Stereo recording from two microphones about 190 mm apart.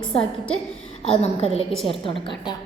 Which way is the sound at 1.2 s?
35° left (ahead or behind).